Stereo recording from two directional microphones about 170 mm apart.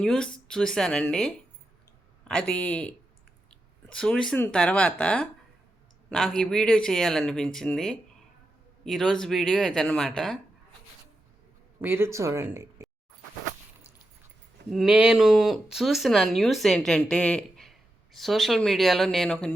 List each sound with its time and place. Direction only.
0.0 s speech: 5° left (ahead or behind)
11.8 s speech: 15° right (ahead or behind)
14.7 s speech: centre (ahead or behind)